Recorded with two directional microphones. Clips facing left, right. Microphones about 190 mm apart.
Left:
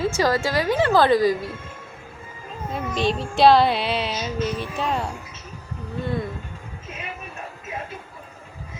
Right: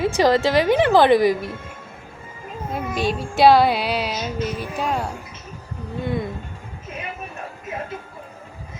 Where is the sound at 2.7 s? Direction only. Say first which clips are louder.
Even; 5° right (ahead or behind).